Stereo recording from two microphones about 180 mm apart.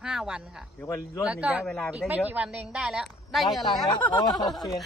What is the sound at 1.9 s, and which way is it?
Speech, 5° right (ahead or behind).